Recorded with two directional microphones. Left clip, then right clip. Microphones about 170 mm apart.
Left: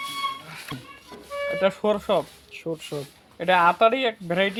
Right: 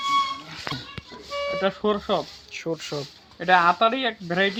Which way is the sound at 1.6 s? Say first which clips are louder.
Left 3 dB; 50° left (ahead or behind).